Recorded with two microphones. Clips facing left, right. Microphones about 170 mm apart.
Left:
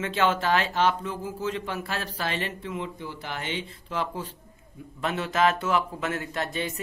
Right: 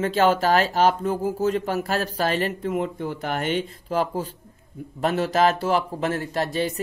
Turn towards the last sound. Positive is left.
turn(degrees=-35)  # may be behind; listen again after turning